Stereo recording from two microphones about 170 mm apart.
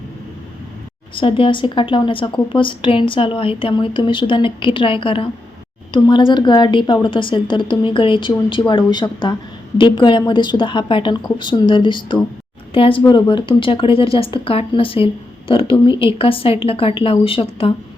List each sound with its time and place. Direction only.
1.1 s a woman's voice: 30° left (ahead or behind)